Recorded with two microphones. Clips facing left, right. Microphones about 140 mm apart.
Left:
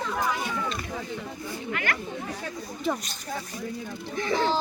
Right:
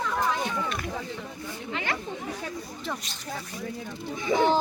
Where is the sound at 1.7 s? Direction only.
25° right (ahead or behind).